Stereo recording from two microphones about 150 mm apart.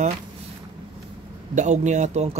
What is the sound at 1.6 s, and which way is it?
Speech, 50° right (ahead or behind).